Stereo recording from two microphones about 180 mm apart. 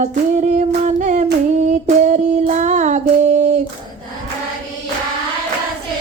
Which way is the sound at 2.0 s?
40° right (ahead or behind).